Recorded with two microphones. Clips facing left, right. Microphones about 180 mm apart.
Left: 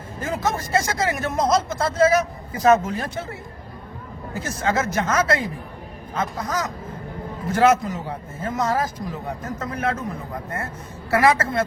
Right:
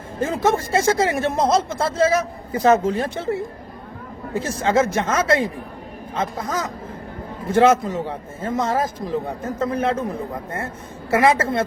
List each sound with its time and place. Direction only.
0.2 s speech: 30° right (ahead or behind)